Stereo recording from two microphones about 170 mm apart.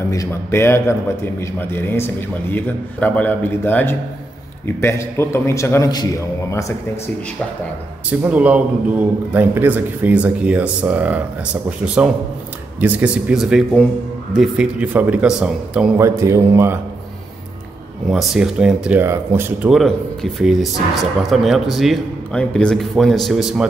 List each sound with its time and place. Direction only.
0.1 s a man's voice: 15° left (ahead or behind)
8.1 s speech: 10° right (ahead or behind)
16.0 s speech: 15° right (ahead or behind)
18.0 s speech: 5° right (ahead or behind)